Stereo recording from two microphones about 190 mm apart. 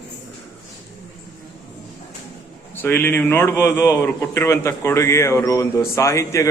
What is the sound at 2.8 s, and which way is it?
A man's voice, 10° left (ahead or behind).